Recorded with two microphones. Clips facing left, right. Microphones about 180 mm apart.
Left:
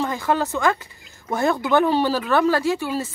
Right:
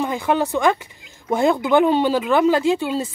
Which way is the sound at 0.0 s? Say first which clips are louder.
Right 2 dB; 15° right (ahead or behind).